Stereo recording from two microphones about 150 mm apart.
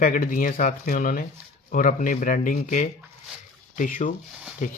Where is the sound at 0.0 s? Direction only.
65° left (ahead or behind).